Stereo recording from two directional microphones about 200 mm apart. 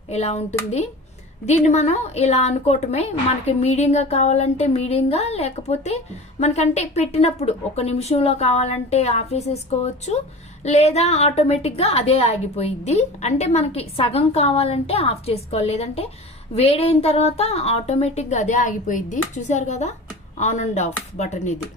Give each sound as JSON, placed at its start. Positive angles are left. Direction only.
{"t": 0.1, "sound": "a woman's voice", "side_deg": 30}